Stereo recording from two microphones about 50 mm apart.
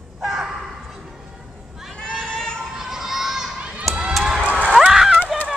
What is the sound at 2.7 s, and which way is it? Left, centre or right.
Crowd, centre.